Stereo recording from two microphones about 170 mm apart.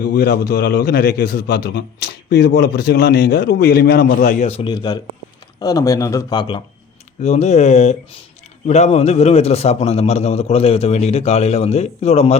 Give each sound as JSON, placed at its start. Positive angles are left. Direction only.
{"t": 0.0, "sound": "a man's voice", "side_deg": 65}
{"t": 4.7, "sound": "speech", "side_deg": 25}
{"t": 7.2, "sound": "a man's voice", "side_deg": 40}